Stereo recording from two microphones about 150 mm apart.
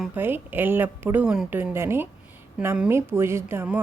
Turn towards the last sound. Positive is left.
turn(degrees=-15)  # may be behind; listen again after turning